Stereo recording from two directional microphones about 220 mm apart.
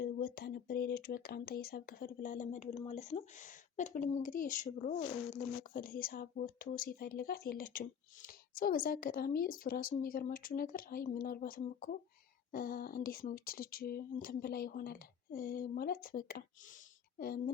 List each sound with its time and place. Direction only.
0.0 s speech: 45° left (ahead or behind)